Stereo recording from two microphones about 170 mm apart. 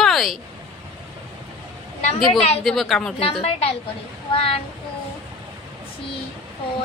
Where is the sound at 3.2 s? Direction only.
35° left (ahead or behind).